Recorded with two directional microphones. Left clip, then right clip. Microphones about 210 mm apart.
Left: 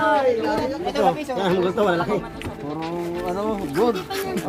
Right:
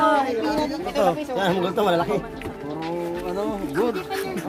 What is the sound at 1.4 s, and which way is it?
Speech, 45° right (ahead or behind).